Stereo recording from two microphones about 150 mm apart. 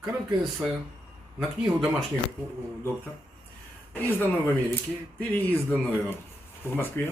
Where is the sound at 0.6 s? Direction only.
5° left (ahead or behind).